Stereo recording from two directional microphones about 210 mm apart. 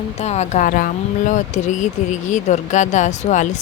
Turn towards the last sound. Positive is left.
turn(degrees=35)  # may be behind; listen again after turning